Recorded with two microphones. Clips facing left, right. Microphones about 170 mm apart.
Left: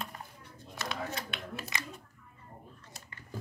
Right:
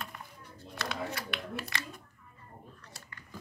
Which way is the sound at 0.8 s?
20° left (ahead or behind).